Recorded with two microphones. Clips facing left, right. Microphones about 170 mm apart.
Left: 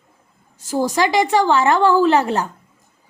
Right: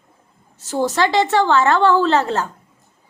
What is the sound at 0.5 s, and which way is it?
Speech, 10° left (ahead or behind).